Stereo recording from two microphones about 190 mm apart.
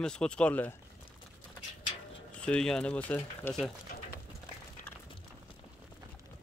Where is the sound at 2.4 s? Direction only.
5° left (ahead or behind).